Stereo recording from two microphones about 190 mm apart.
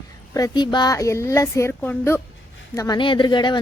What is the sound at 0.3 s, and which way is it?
A woman's voice, 20° left (ahead or behind).